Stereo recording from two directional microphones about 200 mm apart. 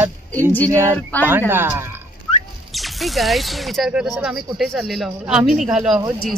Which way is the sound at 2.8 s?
Centre (ahead or behind).